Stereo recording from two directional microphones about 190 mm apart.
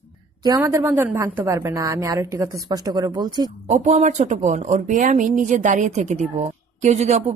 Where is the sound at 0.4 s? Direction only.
15° right (ahead or behind).